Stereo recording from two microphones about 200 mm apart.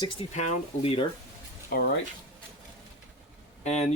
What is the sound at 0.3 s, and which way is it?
Speech, 35° left (ahead or behind).